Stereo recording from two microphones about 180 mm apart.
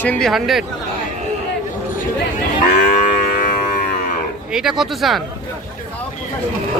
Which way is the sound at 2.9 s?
45° left (ahead or behind).